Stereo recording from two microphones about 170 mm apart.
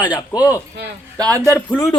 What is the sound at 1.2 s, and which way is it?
Speech, 20° right (ahead or behind).